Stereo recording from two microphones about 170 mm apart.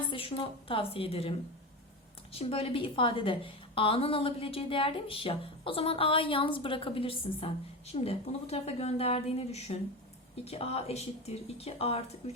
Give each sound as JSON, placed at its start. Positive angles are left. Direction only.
{"t": 0.1, "sound": "a woman's voice", "side_deg": 30}